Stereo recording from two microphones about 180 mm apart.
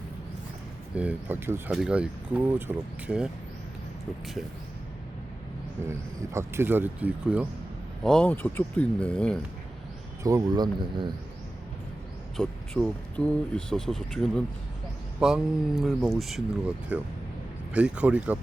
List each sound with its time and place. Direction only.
0.9 s speech: 10° right (ahead or behind)
6.3 s speech: 15° right (ahead or behind)
8.0 s speech: 5° left (ahead or behind)
10.2 s speech: 20° right (ahead or behind)
12.4 s speech: centre (ahead or behind)